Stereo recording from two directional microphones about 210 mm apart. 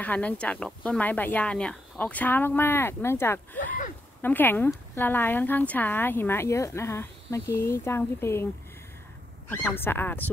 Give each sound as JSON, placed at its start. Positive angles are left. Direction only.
{"t": 0.0, "sound": "a woman's voice", "side_deg": 5}
{"t": 3.5, "sound": "speech", "side_deg": 40}
{"t": 4.2, "sound": "a woman's voice", "side_deg": 10}
{"t": 9.5, "sound": "a woman's voice", "side_deg": 5}